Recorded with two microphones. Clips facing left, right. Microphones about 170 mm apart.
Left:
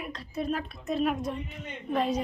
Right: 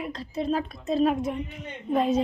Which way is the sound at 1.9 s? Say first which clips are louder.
Right 4 dB; 25° right (ahead or behind).